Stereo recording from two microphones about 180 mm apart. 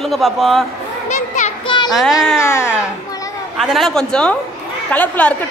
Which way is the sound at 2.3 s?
15° left (ahead or behind).